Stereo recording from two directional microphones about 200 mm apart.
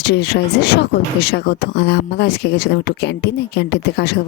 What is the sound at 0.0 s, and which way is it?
Speech, 55° left (ahead or behind).